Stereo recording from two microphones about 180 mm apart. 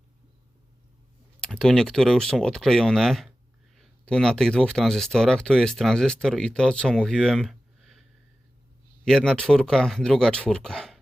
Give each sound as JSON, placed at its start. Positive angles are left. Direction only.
{"t": 1.4, "sound": "speech", "side_deg": 0}
{"t": 9.0, "sound": "speech", "side_deg": 5}